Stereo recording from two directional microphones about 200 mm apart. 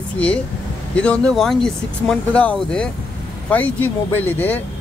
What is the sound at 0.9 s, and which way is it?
Speech, 5° left (ahead or behind).